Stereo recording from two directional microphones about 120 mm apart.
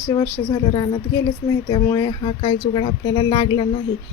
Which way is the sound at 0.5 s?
35° left (ahead or behind).